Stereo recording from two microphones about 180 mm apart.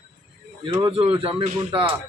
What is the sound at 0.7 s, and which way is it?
Speech, 25° right (ahead or behind).